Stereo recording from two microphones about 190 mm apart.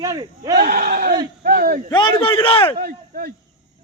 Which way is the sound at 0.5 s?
55° right (ahead or behind).